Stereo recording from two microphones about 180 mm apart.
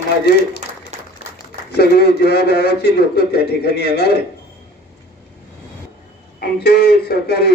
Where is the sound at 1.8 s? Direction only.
65° left (ahead or behind).